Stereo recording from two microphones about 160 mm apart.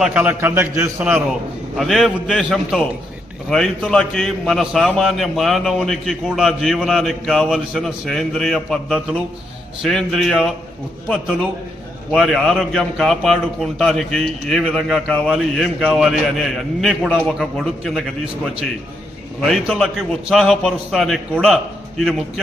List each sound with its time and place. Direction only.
0.0 s a man's voice: 10° right (ahead or behind)
1.7 s a man's voice: centre (ahead or behind)
19.4 s a man's voice: 5° left (ahead or behind)